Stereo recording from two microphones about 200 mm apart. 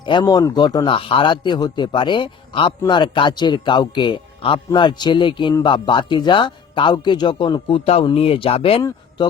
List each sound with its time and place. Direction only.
0.0 s speech: 20° left (ahead or behind)